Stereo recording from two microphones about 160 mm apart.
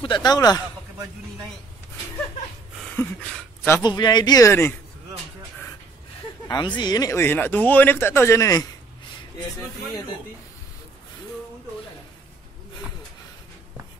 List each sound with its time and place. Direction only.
0.0 s speech: 25° left (ahead or behind)
3.0 s speech: 15° left (ahead or behind)
3.8 s speech: 25° left (ahead or behind)
6.4 s speech: 25° left (ahead or behind)